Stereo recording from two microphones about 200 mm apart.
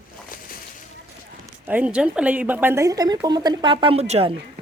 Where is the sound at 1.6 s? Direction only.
5° right (ahead or behind); by 4.4 s 30° right (ahead or behind).